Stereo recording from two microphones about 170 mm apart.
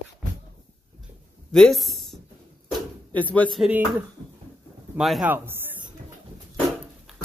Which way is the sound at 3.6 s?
10° right (ahead or behind).